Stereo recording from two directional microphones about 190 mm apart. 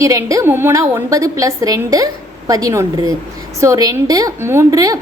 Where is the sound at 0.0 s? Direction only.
15° right (ahead or behind).